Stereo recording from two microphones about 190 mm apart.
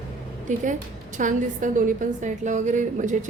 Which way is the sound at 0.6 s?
40° right (ahead or behind).